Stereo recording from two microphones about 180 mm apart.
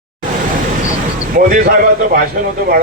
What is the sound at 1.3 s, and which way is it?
Speech, 50° right (ahead or behind).